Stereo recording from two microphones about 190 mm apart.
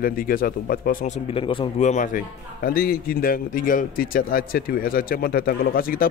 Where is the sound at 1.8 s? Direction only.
40° left (ahead or behind).